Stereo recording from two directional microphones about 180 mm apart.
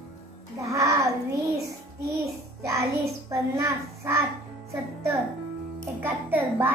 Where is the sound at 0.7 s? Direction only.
15° right (ahead or behind).